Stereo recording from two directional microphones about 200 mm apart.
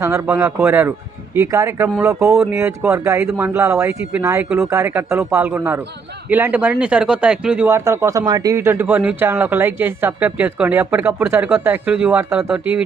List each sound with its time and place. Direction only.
0.0 s speech: 15° right (ahead or behind)